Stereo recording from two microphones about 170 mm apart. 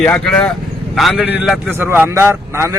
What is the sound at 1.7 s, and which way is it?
A man's voice, 15° right (ahead or behind).